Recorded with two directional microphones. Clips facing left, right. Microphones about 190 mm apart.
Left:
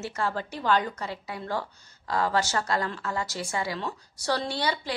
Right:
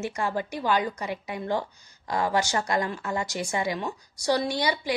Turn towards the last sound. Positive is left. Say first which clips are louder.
# right 3 dB
turn(degrees=-15)  # may be behind; listen again after turning